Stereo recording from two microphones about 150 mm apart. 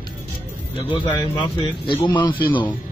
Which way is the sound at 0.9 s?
35° left (ahead or behind).